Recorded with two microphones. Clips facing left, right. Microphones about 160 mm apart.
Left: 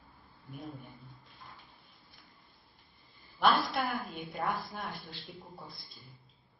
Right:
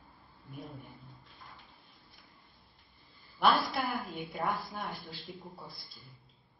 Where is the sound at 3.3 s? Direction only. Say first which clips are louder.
Even; centre (ahead or behind).